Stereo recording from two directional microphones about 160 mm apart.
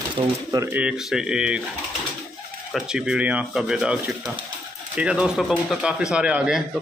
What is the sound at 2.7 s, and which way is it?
Speech, 5° right (ahead or behind).